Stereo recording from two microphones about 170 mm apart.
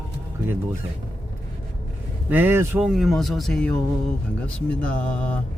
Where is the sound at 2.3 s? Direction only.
10° right (ahead or behind).